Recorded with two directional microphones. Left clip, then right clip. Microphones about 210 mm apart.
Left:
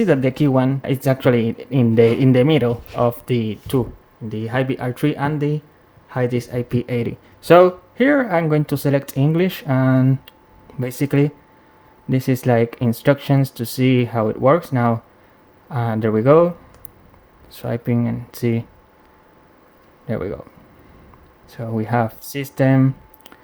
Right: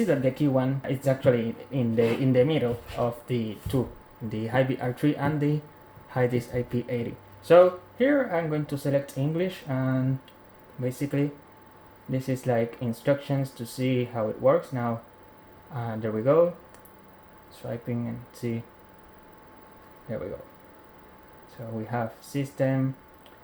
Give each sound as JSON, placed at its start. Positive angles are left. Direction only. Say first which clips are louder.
{"t": 0.0, "sound": "speech", "louder": "left 7 dB", "side_deg": 45}
{"t": 4.3, "sound": "speech", "louder": "left 4 dB", "side_deg": 30}
{"t": 17.5, "sound": "speech", "louder": "left 11 dB", "side_deg": 55}
{"t": 20.1, "sound": "speech", "louder": "left 9 dB", "side_deg": 55}
{"t": 21.5, "sound": "speech", "louder": "left 11 dB", "side_deg": 55}